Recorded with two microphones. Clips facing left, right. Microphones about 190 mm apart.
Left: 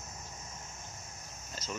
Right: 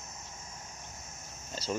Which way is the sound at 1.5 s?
30° right (ahead or behind).